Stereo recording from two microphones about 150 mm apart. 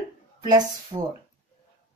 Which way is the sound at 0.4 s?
30° right (ahead or behind).